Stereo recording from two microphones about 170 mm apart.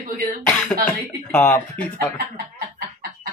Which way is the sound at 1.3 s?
10° left (ahead or behind).